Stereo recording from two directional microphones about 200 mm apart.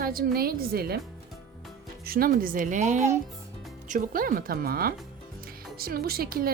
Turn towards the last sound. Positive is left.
turn(degrees=-50)  # may be behind; listen again after turning